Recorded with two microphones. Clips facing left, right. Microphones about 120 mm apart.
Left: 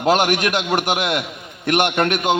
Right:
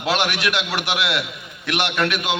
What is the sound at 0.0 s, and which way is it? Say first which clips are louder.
A man's voice: left 5 dB; 45° left (ahead or behind).